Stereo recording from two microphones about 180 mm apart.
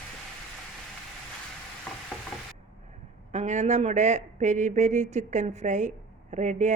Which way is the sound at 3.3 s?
40° right (ahead or behind).